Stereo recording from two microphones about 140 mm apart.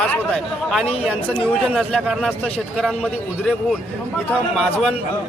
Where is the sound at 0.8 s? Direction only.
45° left (ahead or behind).